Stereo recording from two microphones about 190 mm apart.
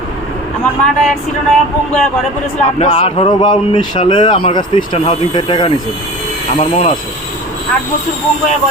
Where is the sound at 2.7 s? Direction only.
30° left (ahead or behind).